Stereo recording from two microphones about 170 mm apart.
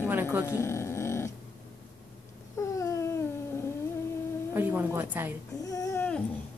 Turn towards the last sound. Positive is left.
turn(degrees=20)  # may be behind; listen again after turning